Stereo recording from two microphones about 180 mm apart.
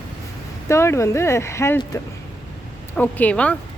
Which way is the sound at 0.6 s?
15° left (ahead or behind).